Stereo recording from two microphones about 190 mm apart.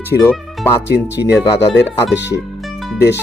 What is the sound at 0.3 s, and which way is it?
Speech, 10° left (ahead or behind).